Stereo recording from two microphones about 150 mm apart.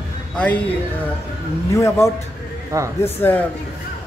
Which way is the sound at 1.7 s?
20° left (ahead or behind).